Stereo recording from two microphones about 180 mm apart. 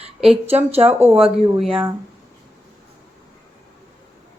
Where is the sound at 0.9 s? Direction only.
10° right (ahead or behind).